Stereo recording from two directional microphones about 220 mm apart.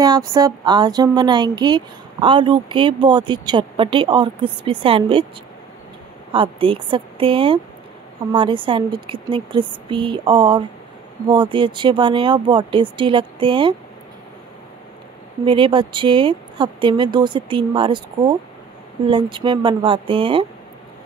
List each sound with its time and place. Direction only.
0.3 s speech: 20° right (ahead or behind)
6.3 s speech: 25° right (ahead or behind)
15.4 s speech: 25° right (ahead or behind)